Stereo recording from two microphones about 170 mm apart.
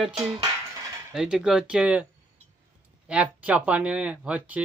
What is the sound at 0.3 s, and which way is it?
Cutlery, 20° right (ahead or behind).